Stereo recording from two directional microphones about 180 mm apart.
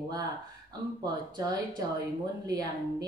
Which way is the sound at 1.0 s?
25° right (ahead or behind).